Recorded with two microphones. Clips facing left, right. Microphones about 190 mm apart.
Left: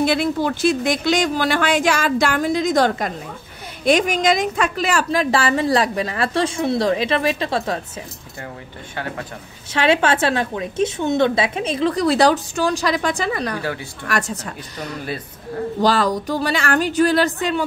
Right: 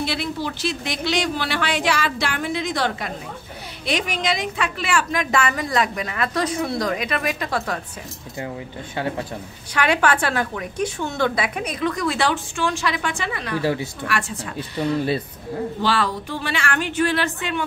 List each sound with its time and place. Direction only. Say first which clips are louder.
0.0 s a woman's voice: left 7 dB; 50° left (ahead or behind); by 7.8 s 25° left (ahead or behind)
9.8 s a woman's voice: left 3 dB; 25° left (ahead or behind)
13.6 s speech: right 4 dB; 25° right (ahead or behind)
14.0 s speech: left 6 dB; 40° left (ahead or behind)
15.8 s a woman's voice: left 6 dB; 40° left (ahead or behind)